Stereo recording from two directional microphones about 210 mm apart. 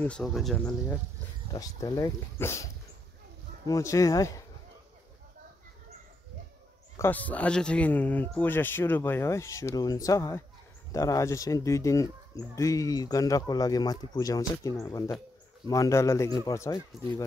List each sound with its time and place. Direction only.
0.0 s speech: 5° left (ahead or behind)
1.5 s speech: 15° left (ahead or behind)
7.0 s speech: 10° left (ahead or behind)